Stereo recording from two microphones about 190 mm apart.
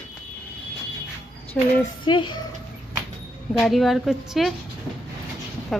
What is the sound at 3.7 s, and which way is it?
Speech, centre (ahead or behind).